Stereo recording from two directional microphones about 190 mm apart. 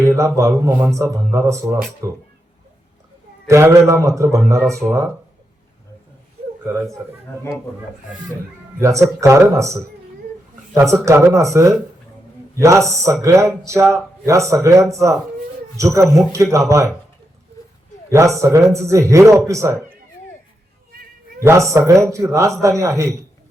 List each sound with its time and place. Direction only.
0.0 s a man's voice: 15° right (ahead or behind)
3.4 s a man's voice: 15° right (ahead or behind)
6.7 s a man's voice: 15° right (ahead or behind)
8.8 s a man's voice: 15° right (ahead or behind)
10.8 s a man's voice: 15° right (ahead or behind)
18.1 s a man's voice: 15° right (ahead or behind)
21.4 s a man's voice: 15° right (ahead or behind)